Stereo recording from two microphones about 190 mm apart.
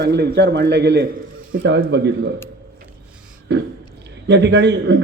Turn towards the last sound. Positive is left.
turn(degrees=-65)  # may be behind; listen again after turning